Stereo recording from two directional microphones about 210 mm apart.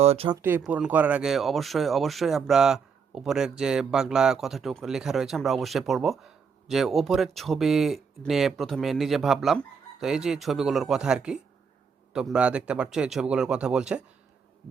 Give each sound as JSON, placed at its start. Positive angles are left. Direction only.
{"t": 0.0, "sound": "speech", "side_deg": -30}
{"t": 0.4, "sound": "speech", "side_deg": -10}